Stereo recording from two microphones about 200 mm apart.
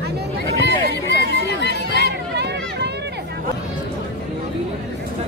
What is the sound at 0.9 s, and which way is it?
Music, 55° left (ahead or behind).